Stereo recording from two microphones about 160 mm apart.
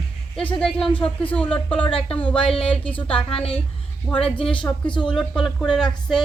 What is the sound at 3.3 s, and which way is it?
Speech, 35° left (ahead or behind).